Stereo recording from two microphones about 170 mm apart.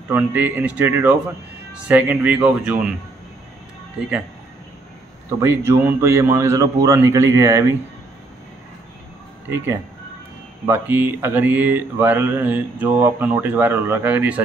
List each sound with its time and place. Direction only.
0.1 s speech: 10° right (ahead or behind)
4.0 s speech: 5° right (ahead or behind)
5.7 s speech: 15° right (ahead or behind)
10.7 s speech: 10° right (ahead or behind)